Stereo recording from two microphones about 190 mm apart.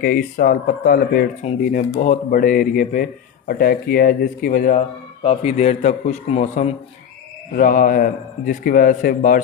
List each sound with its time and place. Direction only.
0.0 s speech: 50° left (ahead or behind)
1.4 s a man's voice: 40° left (ahead or behind)
5.2 s a man's voice: 35° left (ahead or behind)